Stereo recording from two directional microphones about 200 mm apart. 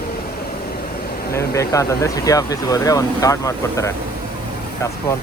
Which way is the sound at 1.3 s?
15° left (ahead or behind).